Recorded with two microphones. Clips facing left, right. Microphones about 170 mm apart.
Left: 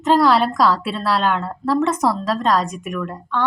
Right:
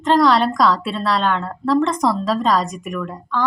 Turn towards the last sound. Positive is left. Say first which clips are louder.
# even
turn(degrees=0)  # may be behind; listen again after turning